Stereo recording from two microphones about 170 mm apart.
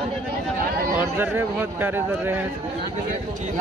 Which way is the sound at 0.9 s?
10° right (ahead or behind).